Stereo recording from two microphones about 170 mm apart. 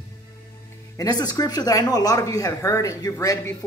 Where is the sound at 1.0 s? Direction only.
25° left (ahead or behind).